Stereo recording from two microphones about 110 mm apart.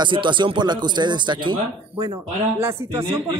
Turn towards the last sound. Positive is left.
turn(degrees=-25)  # may be behind; listen again after turning